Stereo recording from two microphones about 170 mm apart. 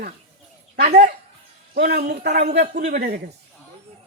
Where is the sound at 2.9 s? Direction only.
65° right (ahead or behind).